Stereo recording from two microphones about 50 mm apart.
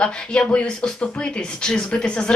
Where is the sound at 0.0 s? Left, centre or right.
Left.